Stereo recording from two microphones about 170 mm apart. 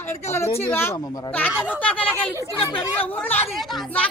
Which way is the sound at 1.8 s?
5° left (ahead or behind).